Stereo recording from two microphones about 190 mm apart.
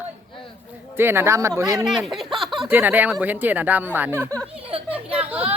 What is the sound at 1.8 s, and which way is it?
Speech, centre (ahead or behind).